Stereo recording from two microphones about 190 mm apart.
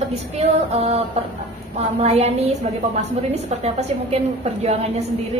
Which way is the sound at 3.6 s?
35° right (ahead or behind).